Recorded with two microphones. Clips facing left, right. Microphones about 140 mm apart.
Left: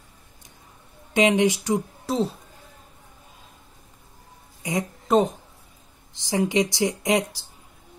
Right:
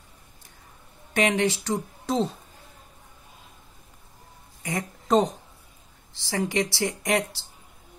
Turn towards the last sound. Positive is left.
turn(degrees=15)  # may be behind; listen again after turning